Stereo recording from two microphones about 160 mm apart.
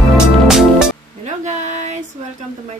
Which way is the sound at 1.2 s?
45° right (ahead or behind).